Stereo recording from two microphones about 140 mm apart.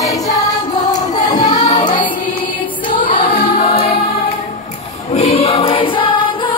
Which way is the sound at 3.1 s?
90° left.